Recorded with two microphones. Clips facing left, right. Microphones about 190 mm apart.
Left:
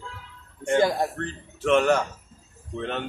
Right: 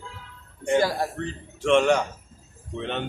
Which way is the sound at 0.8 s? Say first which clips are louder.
Left 4 dB; 20° left (ahead or behind).